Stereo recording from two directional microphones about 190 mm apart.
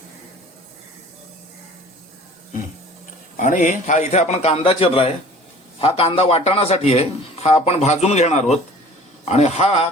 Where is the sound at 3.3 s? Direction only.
40° left (ahead or behind).